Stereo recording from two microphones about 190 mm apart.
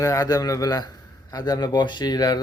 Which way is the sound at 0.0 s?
20° left (ahead or behind).